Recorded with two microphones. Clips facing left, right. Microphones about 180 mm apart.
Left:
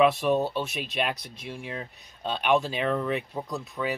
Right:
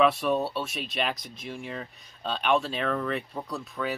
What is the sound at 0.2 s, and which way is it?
Speech, 10° left (ahead or behind).